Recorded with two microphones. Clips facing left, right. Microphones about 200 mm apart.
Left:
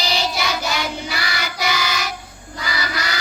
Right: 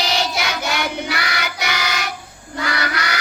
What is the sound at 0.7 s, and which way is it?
Child singing, 65° right (ahead or behind).